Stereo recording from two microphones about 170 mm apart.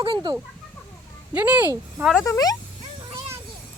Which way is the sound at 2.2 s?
20° left (ahead or behind).